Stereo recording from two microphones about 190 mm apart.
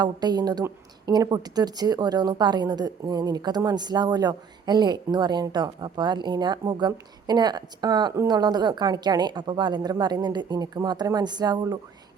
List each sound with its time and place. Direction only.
0.0 s a woman's voice: 20° right (ahead or behind)